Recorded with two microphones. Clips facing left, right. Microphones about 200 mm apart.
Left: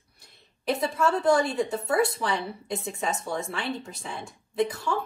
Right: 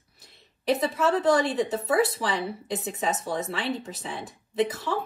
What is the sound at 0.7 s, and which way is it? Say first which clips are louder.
A woman's voice: right 1 dB; 5° right (ahead or behind).